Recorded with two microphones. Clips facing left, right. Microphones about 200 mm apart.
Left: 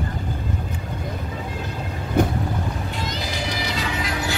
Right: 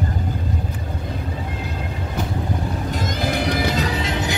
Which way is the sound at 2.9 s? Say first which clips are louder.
Right 6 dB; 50° right (ahead or behind).